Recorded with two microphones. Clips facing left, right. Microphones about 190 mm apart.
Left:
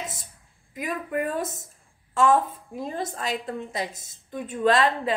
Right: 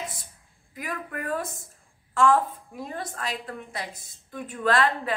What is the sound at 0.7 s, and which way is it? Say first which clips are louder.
A woman's voice: left 6 dB; 20° left (ahead or behind).